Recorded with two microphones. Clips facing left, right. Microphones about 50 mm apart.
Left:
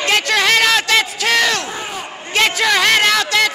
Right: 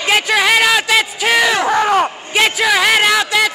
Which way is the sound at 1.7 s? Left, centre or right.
Right.